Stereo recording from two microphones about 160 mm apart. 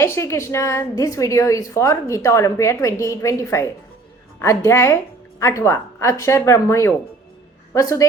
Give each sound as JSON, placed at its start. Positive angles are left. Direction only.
{"t": 0.0, "sound": "a woman's voice", "side_deg": 15}